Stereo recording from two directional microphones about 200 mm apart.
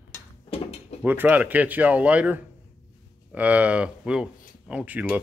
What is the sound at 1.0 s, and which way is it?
A man's voice, 10° right (ahead or behind).